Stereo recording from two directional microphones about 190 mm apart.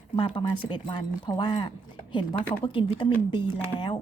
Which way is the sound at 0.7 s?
25° left (ahead or behind).